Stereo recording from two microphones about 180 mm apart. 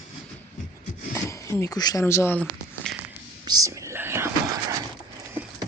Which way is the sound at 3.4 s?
20° right (ahead or behind).